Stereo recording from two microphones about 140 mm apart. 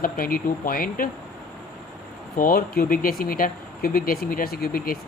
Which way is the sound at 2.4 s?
90° left.